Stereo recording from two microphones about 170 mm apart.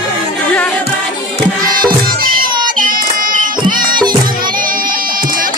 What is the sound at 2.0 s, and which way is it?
Music, 60° right (ahead or behind).